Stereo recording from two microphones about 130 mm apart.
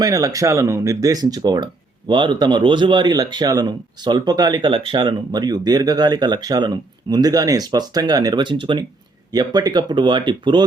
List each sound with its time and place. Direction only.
0.0 s speech: 25° right (ahead or behind)